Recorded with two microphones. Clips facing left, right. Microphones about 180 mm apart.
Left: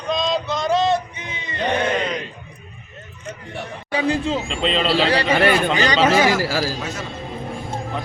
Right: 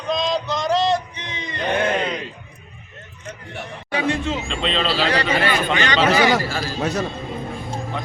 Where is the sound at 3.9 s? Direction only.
30° left (ahead or behind).